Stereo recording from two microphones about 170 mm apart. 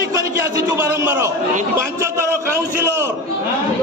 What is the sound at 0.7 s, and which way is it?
A man's voice, 15° right (ahead or behind).